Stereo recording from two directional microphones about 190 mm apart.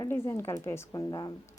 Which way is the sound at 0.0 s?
15° left (ahead or behind).